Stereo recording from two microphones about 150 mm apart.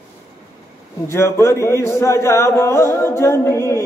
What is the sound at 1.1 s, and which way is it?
A man's voice, 20° left (ahead or behind).